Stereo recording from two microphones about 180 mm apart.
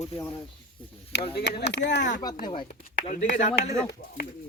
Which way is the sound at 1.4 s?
75° left (ahead or behind).